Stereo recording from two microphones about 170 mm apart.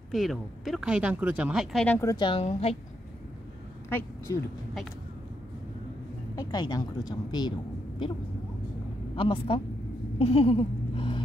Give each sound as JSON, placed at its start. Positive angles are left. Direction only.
{"t": 0.1, "sound": "speech", "side_deg": 0}
{"t": 2.0, "sound": "speech", "side_deg": 20}
{"t": 4.3, "sound": "speech", "side_deg": 20}
{"t": 6.3, "sound": "a woman's voice", "side_deg": 25}
{"t": 9.1, "sound": "speech", "side_deg": 30}
{"t": 10.1, "sound": "a sound", "side_deg": 35}